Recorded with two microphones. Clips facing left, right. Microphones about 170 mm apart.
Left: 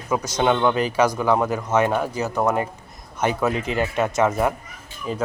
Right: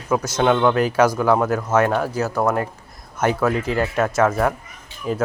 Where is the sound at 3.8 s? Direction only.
Centre (ahead or behind).